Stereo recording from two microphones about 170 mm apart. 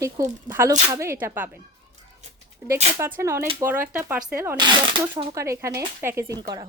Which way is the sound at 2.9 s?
15° right (ahead or behind).